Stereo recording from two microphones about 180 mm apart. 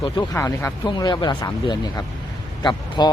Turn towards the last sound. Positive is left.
turn(degrees=25)  # may be behind; listen again after turning